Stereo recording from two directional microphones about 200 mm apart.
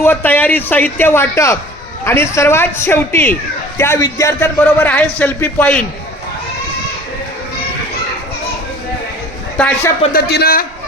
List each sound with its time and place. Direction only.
0.0 s a man's voice: 10° left (ahead or behind)
9.6 s a man's voice: 5° left (ahead or behind)
10.1 s speech: 50° left (ahead or behind)